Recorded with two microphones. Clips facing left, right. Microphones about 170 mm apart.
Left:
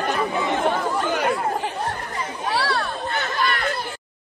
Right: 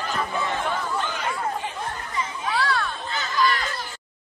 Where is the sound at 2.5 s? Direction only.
35° left (ahead or behind).